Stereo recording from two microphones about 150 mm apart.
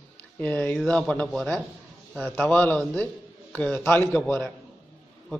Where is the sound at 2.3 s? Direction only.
10° left (ahead or behind).